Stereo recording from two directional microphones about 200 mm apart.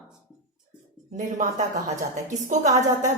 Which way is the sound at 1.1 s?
40° right (ahead or behind).